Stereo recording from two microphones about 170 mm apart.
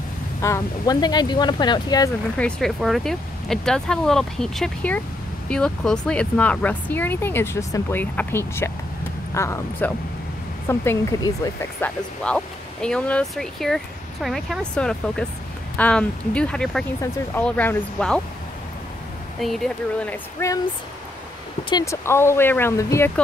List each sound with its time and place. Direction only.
0.4 s speech: 20° left (ahead or behind)
2.3 s speech: 5° left (ahead or behind)
11.8 s speech: 5° left (ahead or behind)
19.4 s speech: centre (ahead or behind)
20.3 s speech: 20° left (ahead or behind)
21.6 s speech: 20° left (ahead or behind)